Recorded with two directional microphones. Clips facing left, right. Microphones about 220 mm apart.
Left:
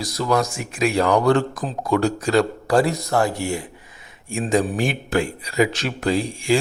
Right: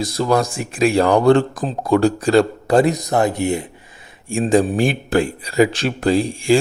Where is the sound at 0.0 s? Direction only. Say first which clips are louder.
Right 3 dB; 30° right (ahead or behind).